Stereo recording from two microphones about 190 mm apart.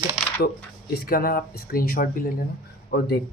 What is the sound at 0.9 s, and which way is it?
Speech, 50° left (ahead or behind).